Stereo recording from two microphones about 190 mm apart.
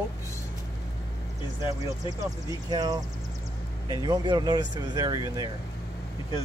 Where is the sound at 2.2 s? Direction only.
20° right (ahead or behind).